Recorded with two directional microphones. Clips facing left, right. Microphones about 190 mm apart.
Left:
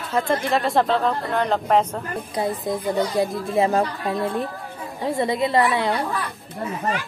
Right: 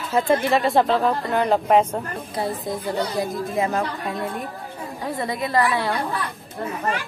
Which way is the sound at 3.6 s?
35° left (ahead or behind).